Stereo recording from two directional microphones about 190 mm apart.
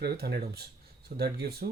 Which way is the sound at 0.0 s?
55° right (ahead or behind).